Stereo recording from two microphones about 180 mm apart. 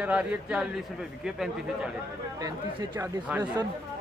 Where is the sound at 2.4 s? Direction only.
20° right (ahead or behind).